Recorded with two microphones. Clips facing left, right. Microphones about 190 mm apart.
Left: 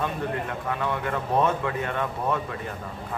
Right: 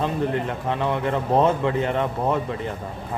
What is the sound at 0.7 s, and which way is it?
Speech, 30° right (ahead or behind).